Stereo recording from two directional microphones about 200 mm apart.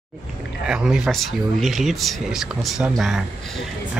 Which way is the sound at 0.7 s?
5° right (ahead or behind).